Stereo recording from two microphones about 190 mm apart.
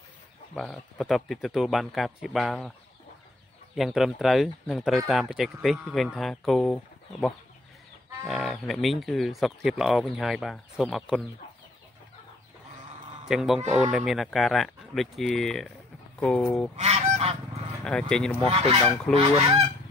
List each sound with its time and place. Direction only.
0.6 s speech: centre (ahead or behind)
3.7 s speech: centre (ahead or behind)
13.3 s speech: centre (ahead or behind)
16.7 s goose: 35° right (ahead or behind)
17.8 s speech: 5° left (ahead or behind)
19.1 s goose: 30° right (ahead or behind)